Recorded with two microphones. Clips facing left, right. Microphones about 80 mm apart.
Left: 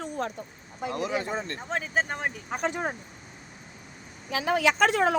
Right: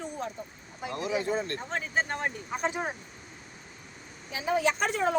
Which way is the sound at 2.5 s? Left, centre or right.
Left.